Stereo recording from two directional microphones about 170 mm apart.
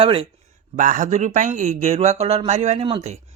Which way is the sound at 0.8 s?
50° right (ahead or behind).